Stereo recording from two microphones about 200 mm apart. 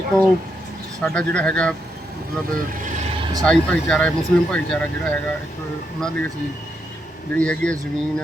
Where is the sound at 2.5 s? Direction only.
40° right (ahead or behind).